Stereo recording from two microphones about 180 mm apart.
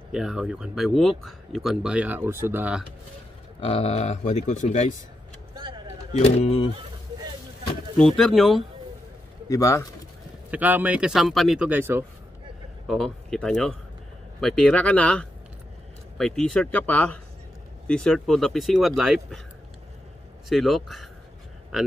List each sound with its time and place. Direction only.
0.1 s speech: 5° right (ahead or behind)
3.6 s speech: 35° left (ahead or behind)
6.1 s speech: 35° left (ahead or behind)
8.0 s speech: centre (ahead or behind)
9.5 s speech: 15° left (ahead or behind)
10.5 s speech: 10° right (ahead or behind)
12.8 s speech: 5° left (ahead or behind)
20.4 s speech: centre (ahead or behind)